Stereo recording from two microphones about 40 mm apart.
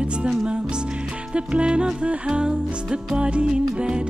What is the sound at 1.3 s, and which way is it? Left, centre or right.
Music, right.